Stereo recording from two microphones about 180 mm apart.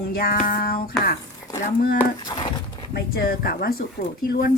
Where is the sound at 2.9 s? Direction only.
60° left (ahead or behind).